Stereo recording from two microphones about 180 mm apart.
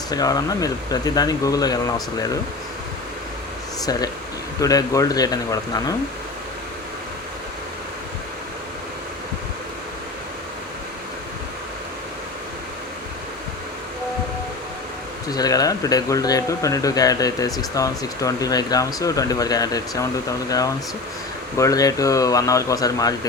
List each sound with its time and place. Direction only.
0.1 s speech: 20° left (ahead or behind)
4.6 s speech: 20° left (ahead or behind)
15.3 s speech: 20° left (ahead or behind)